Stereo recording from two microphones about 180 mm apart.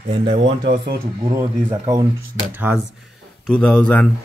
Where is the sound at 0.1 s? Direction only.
25° right (ahead or behind).